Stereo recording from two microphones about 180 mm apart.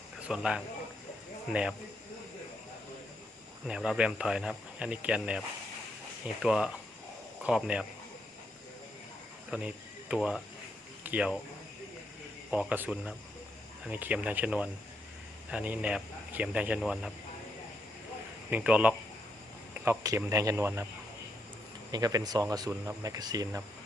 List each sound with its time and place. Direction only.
0.3 s speech: 5° right (ahead or behind)
3.7 s speech: 5° right (ahead or behind)
9.5 s speech: 5° right (ahead or behind)
12.5 s a man's voice: 5° right (ahead or behind)
18.5 s a man's voice: 10° right (ahead or behind)
21.9 s speech: 20° right (ahead or behind)